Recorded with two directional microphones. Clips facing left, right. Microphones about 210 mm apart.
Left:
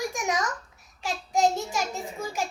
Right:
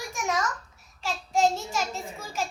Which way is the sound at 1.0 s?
15° left (ahead or behind).